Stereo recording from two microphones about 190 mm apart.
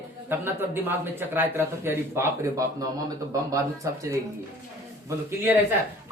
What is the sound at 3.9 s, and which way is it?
Speech, 15° right (ahead or behind).